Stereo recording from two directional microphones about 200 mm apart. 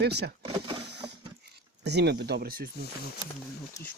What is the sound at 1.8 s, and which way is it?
Speech, 55° right (ahead or behind).